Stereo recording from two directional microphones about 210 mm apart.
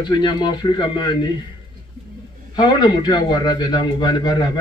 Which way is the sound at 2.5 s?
20° left (ahead or behind).